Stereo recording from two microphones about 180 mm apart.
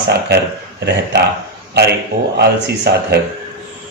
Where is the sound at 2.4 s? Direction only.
65° right (ahead or behind).